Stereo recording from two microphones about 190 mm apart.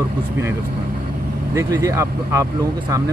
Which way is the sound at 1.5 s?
15° right (ahead or behind).